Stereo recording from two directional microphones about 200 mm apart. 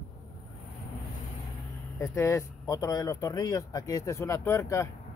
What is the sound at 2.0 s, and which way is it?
Speech, 15° left (ahead or behind).